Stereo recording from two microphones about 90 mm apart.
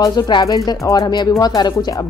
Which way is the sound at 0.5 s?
45° left (ahead or behind).